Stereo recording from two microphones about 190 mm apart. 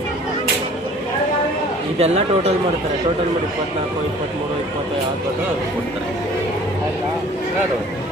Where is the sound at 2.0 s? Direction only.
35° right (ahead or behind).